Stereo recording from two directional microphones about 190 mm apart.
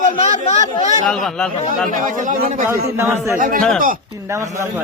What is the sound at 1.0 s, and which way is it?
Speech, 5° left (ahead or behind).